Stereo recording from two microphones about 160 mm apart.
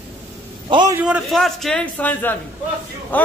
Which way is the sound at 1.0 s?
Centre (ahead or behind).